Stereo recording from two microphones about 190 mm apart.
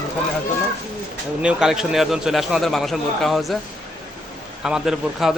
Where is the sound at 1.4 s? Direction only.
5° right (ahead or behind).